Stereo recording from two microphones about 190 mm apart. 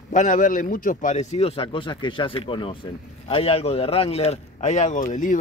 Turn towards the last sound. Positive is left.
turn(degrees=40)  # may be behind; listen again after turning